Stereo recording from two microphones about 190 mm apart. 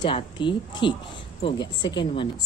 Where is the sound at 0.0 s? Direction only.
25° left (ahead or behind).